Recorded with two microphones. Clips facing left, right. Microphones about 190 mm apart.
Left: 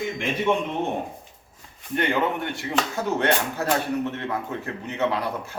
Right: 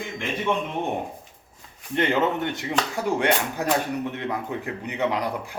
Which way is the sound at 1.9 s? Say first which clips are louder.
Right 1 dB; 20° right (ahead or behind).